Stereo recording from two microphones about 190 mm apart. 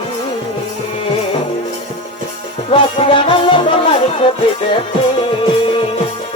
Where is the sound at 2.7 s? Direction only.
30° left (ahead or behind).